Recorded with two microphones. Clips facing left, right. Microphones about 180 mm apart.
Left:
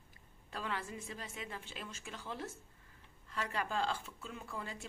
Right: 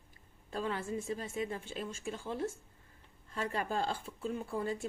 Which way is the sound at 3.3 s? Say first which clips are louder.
Right 3 dB; 30° right (ahead or behind).